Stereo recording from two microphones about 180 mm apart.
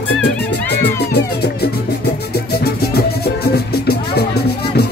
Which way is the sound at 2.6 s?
60° left (ahead or behind).